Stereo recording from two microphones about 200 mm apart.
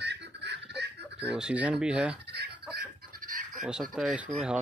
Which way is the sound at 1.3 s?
5° right (ahead or behind).